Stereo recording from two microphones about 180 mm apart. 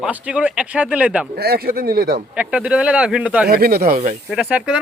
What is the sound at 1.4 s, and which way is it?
Speech, 60° right (ahead or behind).